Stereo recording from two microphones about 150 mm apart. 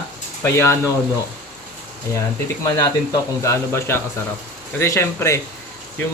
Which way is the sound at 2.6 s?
20° left (ahead or behind).